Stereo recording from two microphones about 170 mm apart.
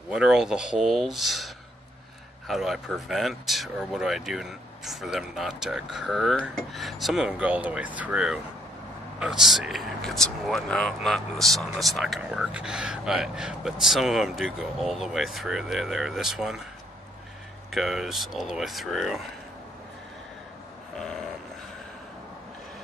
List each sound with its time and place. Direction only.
0.1 s speech: 5° right (ahead or behind)
17.6 s speech: centre (ahead or behind)
20.9 s a sound: centre (ahead or behind)